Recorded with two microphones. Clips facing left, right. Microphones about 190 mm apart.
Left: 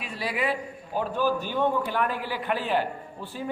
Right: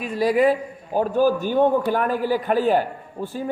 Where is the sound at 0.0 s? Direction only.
45° right (ahead or behind).